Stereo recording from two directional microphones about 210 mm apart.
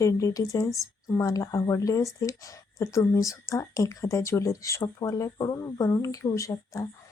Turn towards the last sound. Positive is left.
turn(degrees=15)  # may be behind; listen again after turning